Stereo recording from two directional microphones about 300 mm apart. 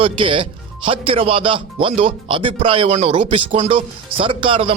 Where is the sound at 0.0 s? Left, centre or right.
Centre.